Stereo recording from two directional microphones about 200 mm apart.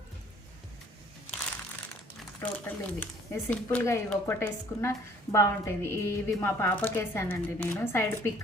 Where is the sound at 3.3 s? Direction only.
10° left (ahead or behind).